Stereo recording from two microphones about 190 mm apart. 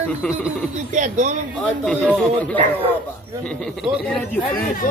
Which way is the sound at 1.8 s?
5° left (ahead or behind).